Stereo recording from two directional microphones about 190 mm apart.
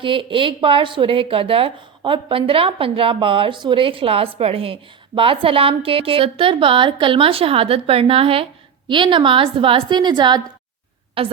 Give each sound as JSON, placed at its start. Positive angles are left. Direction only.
{"t": 0.0, "sound": "a woman's voice", "side_deg": -25}